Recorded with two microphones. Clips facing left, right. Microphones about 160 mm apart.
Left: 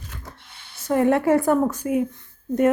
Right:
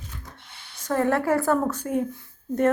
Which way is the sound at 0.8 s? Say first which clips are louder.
Left 4 dB; 15° left (ahead or behind).